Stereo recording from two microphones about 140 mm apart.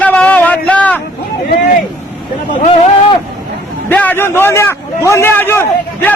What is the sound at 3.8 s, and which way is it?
A man's voice, 10° left (ahead or behind).